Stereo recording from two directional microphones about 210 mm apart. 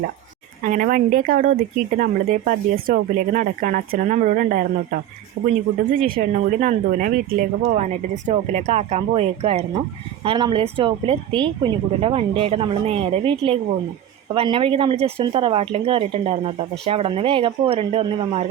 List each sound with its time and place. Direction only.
0.6 s speech: 40° right (ahead or behind)